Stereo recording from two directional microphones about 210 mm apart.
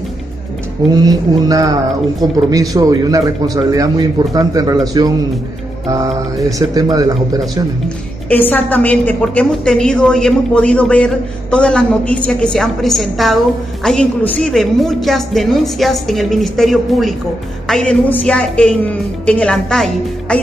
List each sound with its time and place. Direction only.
0.9 s a man's voice: 15° right (ahead or behind)
8.3 s a woman's voice: 10° left (ahead or behind)